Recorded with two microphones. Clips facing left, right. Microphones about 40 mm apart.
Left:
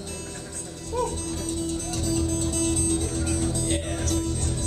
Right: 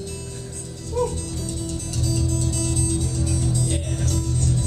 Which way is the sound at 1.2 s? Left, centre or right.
Left.